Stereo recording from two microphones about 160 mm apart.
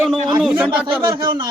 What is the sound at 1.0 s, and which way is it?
Speech, 25° right (ahead or behind).